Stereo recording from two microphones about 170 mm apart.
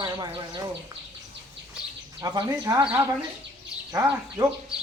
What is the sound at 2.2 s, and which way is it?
Speech, 25° right (ahead or behind).